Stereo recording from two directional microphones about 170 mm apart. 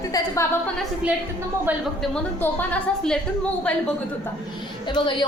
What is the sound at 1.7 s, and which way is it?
Speech, 10° right (ahead or behind).